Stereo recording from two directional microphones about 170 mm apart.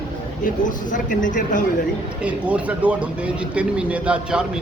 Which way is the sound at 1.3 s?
50° left (ahead or behind).